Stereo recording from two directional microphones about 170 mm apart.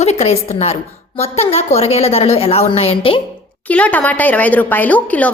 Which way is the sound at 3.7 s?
10° left (ahead or behind).